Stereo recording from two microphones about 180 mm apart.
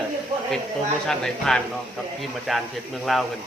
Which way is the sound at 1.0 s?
Centre (ahead or behind).